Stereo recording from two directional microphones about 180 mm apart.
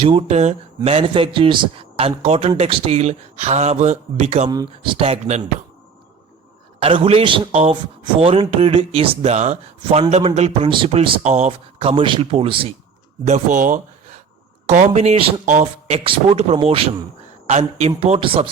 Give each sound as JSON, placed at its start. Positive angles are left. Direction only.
{"t": 0.0, "sound": "speech", "side_deg": -35}
{"t": 4.4, "sound": "speech", "side_deg": -25}
{"t": 6.7, "sound": "speech", "side_deg": -30}
{"t": 13.2, "sound": "speech", "side_deg": -40}